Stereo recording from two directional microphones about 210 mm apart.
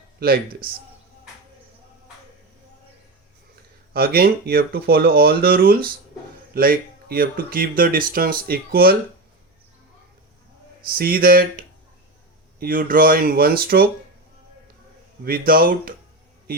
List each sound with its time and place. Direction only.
0.2 s speech: 45° right (ahead or behind)
3.5 s speech: 45° right (ahead or behind)
10.8 s speech: 45° right (ahead or behind)
15.2 s speech: 45° right (ahead or behind)